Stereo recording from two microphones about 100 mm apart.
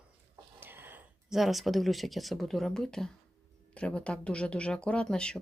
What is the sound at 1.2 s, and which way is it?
Speech, centre (ahead or behind).